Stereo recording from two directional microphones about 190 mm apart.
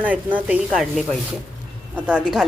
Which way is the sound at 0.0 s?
10° right (ahead or behind).